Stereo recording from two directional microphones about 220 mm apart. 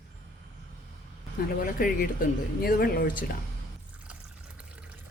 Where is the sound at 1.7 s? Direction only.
40° left (ahead or behind).